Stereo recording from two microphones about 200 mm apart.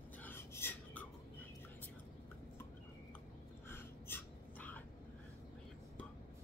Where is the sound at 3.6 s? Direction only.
10° left (ahead or behind).